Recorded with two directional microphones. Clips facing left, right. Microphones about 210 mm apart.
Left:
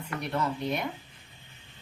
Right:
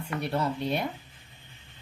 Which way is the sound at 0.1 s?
30° right (ahead or behind).